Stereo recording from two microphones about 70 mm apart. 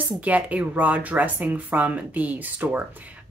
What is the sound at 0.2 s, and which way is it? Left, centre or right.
A woman's voice, right.